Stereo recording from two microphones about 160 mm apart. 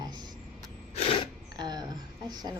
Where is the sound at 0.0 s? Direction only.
25° right (ahead or behind).